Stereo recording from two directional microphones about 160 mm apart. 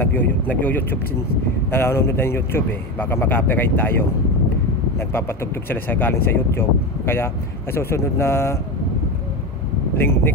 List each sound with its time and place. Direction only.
0.0 s speech: 10° left (ahead or behind)
5.7 s speech: 10° left (ahead or behind)
7.7 s speech: 15° left (ahead or behind)
9.9 s speech: 15° left (ahead or behind)